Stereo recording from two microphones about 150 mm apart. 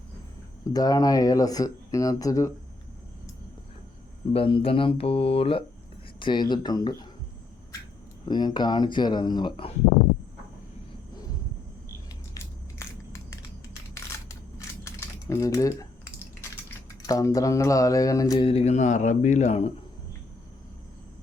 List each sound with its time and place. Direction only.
0.7 s speech: 25° left (ahead or behind)
4.3 s speech: 35° left (ahead or behind)
8.3 s speech: 30° left (ahead or behind)
12.8 s crushing: 20° left (ahead or behind)
14.8 s typing: 20° left (ahead or behind)
17.1 s speech: 25° left (ahead or behind)
18.4 s speech: 45° left (ahead or behind)